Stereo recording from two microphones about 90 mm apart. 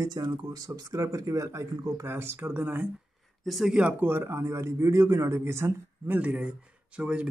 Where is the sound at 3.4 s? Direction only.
Centre (ahead or behind).